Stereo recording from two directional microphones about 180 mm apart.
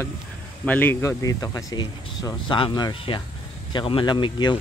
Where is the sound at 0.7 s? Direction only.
10° left (ahead or behind).